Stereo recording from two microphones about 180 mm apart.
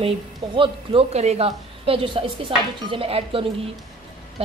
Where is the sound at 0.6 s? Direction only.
35° right (ahead or behind).